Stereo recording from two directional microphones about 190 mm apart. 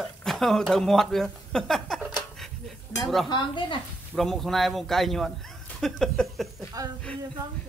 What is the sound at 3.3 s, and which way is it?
Speech, 25° left (ahead or behind).